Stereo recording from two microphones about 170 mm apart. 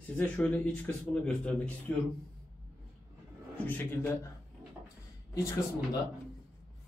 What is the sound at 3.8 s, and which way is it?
Speech, 15° left (ahead or behind).